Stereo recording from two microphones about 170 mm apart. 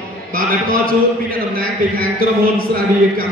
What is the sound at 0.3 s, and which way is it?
A man's voice, 60° right (ahead or behind).